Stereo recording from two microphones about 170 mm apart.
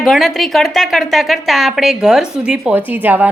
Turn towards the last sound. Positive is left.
turn(degrees=-10)  # may be behind; listen again after turning